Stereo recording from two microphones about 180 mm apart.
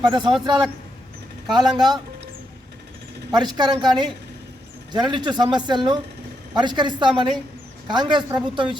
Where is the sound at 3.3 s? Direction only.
25° right (ahead or behind).